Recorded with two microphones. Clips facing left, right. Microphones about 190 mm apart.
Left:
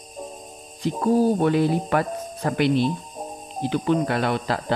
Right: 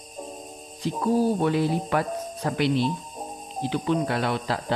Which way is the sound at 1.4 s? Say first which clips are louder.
Left 3 dB; 55° left (ahead or behind).